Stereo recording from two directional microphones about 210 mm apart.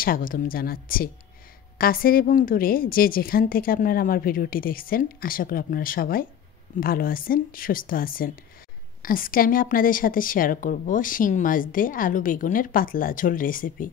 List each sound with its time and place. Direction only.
0.0 s a woman's voice: 40° left (ahead or behind)